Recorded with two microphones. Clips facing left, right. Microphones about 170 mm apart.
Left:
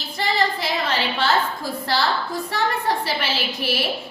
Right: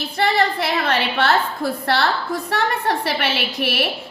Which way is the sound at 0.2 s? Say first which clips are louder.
Right 4 dB; 65° right (ahead or behind).